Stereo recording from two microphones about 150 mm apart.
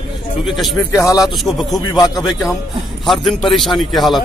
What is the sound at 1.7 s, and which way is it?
Speech, 25° left (ahead or behind).